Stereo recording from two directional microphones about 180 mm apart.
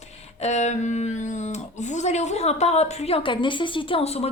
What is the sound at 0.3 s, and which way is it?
A woman's voice, 40° left (ahead or behind).